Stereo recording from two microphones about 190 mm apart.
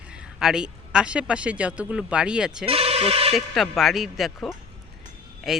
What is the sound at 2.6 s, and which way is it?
Speech, 30° right (ahead or behind).